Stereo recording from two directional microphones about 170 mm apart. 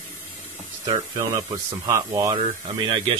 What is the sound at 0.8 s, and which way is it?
Speech, 25° right (ahead or behind).